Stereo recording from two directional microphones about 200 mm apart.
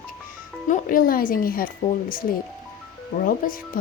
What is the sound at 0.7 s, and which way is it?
Speech, 45° left (ahead or behind).